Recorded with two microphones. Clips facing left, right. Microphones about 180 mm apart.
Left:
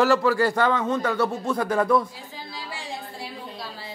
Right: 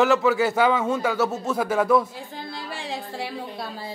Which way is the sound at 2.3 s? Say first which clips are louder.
Right 3 dB; 55° right (ahead or behind).